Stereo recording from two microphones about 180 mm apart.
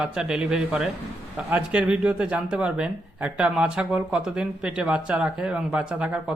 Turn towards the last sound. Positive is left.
turn(degrees=-5)  # may be behind; listen again after turning